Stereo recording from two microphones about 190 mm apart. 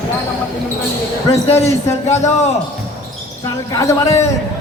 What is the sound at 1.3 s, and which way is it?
Speech, 35° left (ahead or behind).